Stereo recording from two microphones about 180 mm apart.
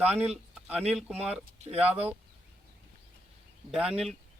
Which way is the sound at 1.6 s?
35° right (ahead or behind).